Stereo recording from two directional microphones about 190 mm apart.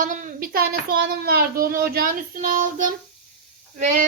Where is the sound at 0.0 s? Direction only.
45° right (ahead or behind).